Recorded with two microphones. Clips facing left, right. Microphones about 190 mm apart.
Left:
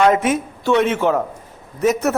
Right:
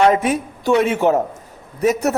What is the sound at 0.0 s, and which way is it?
Speech, 35° right (ahead or behind).